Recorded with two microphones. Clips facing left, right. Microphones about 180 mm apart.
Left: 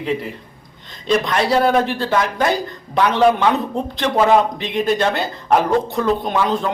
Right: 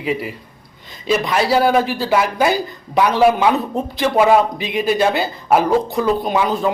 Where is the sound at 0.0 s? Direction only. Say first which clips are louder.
Even; 5° right (ahead or behind).